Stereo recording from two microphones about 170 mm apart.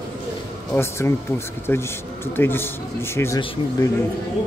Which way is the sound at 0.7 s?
15° left (ahead or behind).